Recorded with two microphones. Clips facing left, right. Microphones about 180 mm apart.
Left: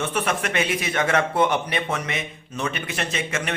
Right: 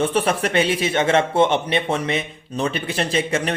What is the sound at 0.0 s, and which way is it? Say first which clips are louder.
Speech: right 5 dB; 30° right (ahead or behind).